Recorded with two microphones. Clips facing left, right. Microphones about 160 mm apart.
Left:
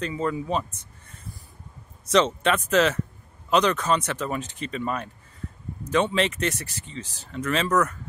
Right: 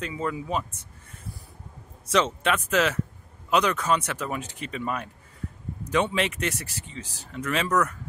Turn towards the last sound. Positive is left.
turn(degrees=-10)  # may be behind; listen again after turning